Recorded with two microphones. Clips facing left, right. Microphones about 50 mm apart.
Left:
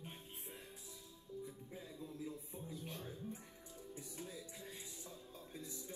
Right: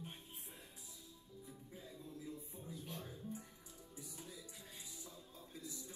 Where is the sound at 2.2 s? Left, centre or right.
Left.